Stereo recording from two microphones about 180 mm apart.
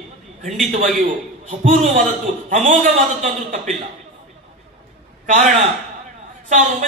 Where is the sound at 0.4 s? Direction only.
45° right (ahead or behind).